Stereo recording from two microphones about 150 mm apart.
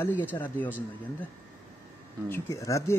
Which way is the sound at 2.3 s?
20° left (ahead or behind).